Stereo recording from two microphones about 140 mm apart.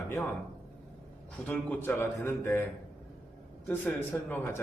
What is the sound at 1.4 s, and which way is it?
A man's voice, 10° left (ahead or behind).